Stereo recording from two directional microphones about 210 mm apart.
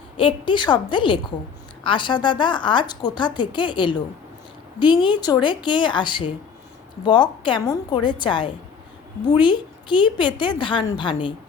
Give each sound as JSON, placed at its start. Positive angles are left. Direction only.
{"t": 0.2, "sound": "a woman's voice", "side_deg": 25}